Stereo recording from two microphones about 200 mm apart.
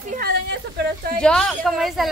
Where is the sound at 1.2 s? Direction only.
5° left (ahead or behind).